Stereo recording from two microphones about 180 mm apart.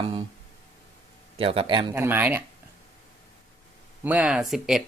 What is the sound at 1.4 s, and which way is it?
Speech, 30° right (ahead or behind).